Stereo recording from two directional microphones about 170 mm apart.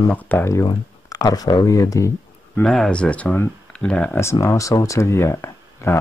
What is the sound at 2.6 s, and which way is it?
Speech, 5° left (ahead or behind).